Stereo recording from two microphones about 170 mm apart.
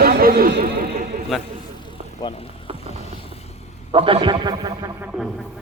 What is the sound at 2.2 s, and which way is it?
Speech, 35° left (ahead or behind).